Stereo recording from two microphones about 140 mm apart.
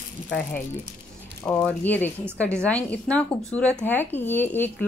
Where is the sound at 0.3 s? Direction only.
10° left (ahead or behind).